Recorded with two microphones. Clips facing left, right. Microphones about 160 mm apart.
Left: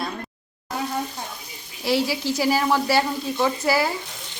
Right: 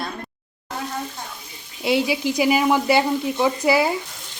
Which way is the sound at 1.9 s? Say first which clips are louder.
Right 2 dB; 20° right (ahead or behind).